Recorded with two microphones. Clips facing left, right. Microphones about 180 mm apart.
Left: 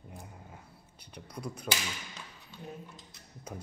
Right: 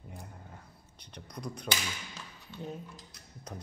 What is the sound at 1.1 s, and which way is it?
Speech, 5° left (ahead or behind).